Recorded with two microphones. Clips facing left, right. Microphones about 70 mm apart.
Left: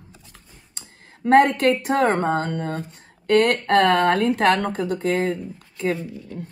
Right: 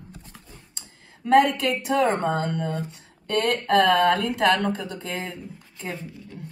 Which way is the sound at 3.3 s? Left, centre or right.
Left.